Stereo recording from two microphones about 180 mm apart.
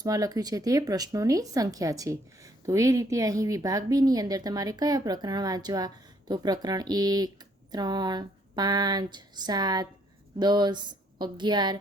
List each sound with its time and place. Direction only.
0.0 s speech: 20° right (ahead or behind)